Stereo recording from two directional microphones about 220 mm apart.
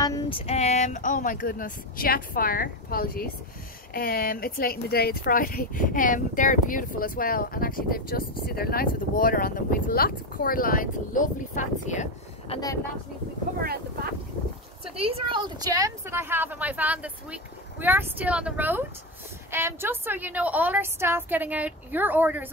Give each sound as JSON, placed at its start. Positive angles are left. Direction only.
{"t": 0.0, "sound": "female singing", "side_deg": 15}
{"t": 0.5, "sound": "speech", "side_deg": 30}
{"t": 15.0, "sound": "a woman's voice", "side_deg": -25}